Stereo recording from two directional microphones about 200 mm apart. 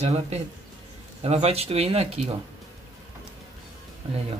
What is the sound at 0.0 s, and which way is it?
Speech, 30° right (ahead or behind).